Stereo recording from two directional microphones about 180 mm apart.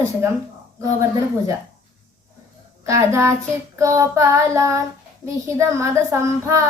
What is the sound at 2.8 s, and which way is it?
Child singing, 15° right (ahead or behind).